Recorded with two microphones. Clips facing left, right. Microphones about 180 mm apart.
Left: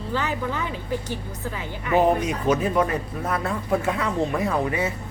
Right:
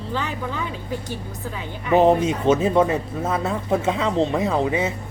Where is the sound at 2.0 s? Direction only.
25° right (ahead or behind).